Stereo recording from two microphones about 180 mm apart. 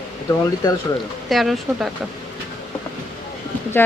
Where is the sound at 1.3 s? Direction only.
Centre (ahead or behind).